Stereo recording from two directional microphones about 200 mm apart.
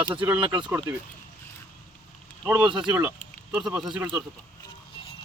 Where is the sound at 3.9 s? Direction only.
20° right (ahead or behind).